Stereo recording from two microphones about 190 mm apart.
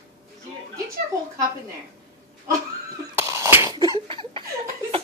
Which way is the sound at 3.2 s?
15° right (ahead or behind).